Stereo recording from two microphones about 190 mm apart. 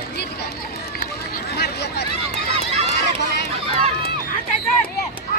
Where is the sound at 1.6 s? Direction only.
60° left (ahead or behind).